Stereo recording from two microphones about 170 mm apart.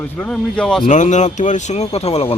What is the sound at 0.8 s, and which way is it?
Speech, 45° left (ahead or behind).